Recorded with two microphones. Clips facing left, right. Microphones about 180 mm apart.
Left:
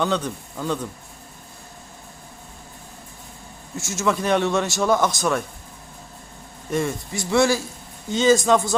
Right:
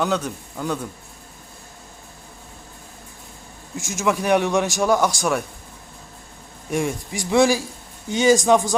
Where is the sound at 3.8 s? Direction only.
15° right (ahead or behind).